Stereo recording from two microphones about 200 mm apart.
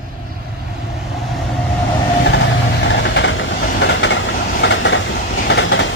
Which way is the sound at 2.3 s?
60° left (ahead or behind).